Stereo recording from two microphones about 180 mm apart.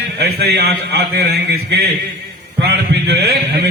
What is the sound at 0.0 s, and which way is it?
A man's voice, 65° right (ahead or behind).